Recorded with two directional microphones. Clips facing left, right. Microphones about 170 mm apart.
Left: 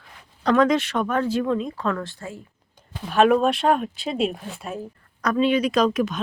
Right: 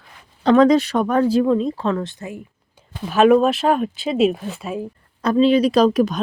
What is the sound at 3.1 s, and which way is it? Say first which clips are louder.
Speech: right 4 dB; centre (ahead or behind).